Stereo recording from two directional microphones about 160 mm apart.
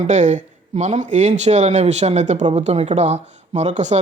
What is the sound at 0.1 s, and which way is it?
Speech, 50° right (ahead or behind).